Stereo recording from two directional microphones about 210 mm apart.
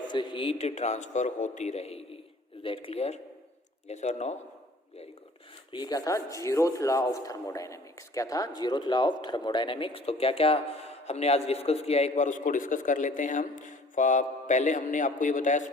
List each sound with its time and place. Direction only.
0.1 s a man's voice: 20° left (ahead or behind)
5.7 s speech: 20° left (ahead or behind); by 15.6 s 35° left (ahead or behind)